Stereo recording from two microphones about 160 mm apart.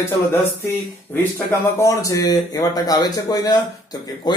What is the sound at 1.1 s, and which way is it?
Speech, 15° left (ahead or behind).